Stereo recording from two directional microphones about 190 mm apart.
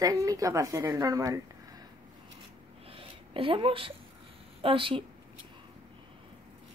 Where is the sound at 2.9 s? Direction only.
30° right (ahead or behind).